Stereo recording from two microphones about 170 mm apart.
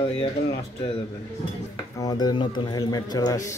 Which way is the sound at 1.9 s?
20° left (ahead or behind).